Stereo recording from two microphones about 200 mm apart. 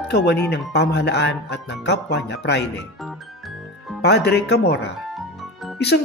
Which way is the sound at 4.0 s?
55° left (ahead or behind).